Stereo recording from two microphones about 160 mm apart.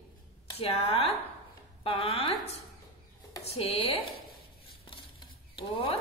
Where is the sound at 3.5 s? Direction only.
40° left (ahead or behind).